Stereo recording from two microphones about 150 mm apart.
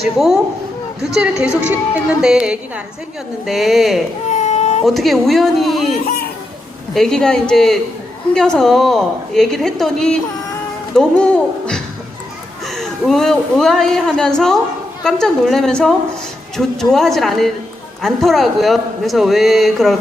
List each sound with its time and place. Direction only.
1.1 s a man's voice: 5° right (ahead or behind)
4.3 s baby cry: 50° left (ahead or behind)
4.9 s a man's voice: centre (ahead or behind)